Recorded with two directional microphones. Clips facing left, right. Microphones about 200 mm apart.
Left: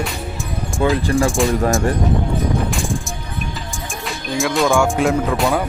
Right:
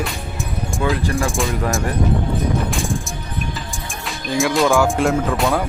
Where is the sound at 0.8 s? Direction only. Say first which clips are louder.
Left 4 dB; 30° left (ahead or behind).